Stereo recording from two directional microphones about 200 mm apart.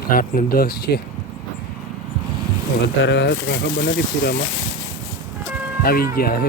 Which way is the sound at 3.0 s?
60° left (ahead or behind).